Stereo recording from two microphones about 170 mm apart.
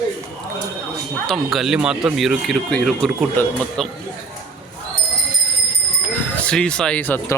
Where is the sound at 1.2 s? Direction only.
Centre (ahead or behind).